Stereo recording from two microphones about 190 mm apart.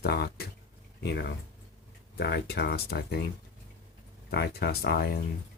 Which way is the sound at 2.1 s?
55° left (ahead or behind).